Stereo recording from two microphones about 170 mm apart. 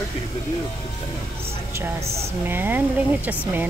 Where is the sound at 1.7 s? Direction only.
15° right (ahead or behind).